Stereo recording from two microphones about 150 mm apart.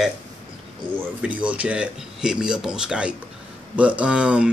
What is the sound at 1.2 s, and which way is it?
Speech, 10° right (ahead or behind).